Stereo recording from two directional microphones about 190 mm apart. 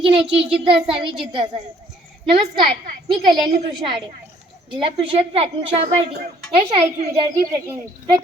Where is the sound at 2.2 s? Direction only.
25° right (ahead or behind).